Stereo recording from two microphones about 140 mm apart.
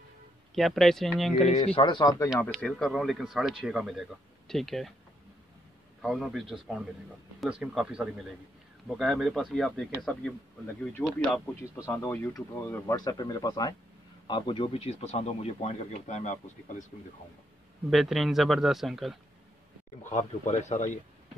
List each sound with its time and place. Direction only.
0.6 s speech: centre (ahead or behind)
1.4 s speech: 50° left (ahead or behind); by 2.2 s 30° left (ahead or behind)
2.4 s speech: 5° left (ahead or behind)
6.0 s speech: 5° right (ahead or behind)
11.6 s speech: 20° left (ahead or behind); by 16.8 s 60° left (ahead or behind)
17.8 s speech: centre (ahead or behind)
20.0 s speech: 60° left (ahead or behind)